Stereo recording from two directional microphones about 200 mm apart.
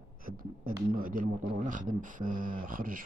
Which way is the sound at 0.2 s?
45° right (ahead or behind).